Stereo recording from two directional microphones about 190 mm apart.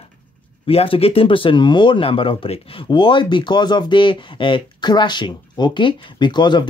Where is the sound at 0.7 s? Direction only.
30° left (ahead or behind).